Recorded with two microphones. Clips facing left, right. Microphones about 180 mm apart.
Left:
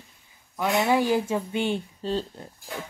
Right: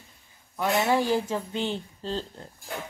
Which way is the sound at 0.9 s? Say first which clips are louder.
Left 2 dB; 15° left (ahead or behind).